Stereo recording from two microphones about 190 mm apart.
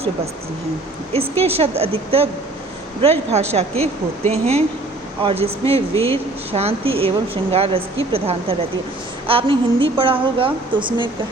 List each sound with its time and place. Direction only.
1.1 s a woman's voice: 30° right (ahead or behind)